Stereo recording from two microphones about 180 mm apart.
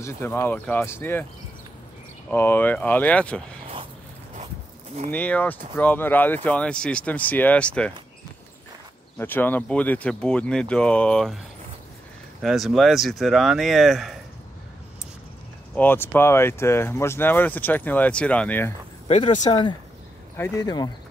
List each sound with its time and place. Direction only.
0.0 s speech: 15° left (ahead or behind)
2.3 s speech: 10° left (ahead or behind)
5.1 s speech: 10° left (ahead or behind)
9.2 s speech: 10° left (ahead or behind)
12.4 s speech: centre (ahead or behind)
15.7 s speech: 10° left (ahead or behind)
19.0 s speech: 40° left (ahead or behind)
20.3 s speech: 15° left (ahead or behind)